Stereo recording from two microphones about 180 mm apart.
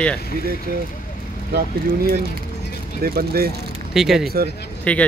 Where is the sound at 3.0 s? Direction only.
55° right (ahead or behind).